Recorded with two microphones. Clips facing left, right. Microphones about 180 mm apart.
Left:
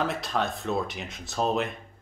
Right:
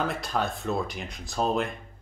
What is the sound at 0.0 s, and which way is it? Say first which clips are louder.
Speech: even; centre (ahead or behind).